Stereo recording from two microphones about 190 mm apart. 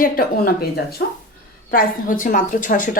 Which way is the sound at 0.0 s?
50° left (ahead or behind).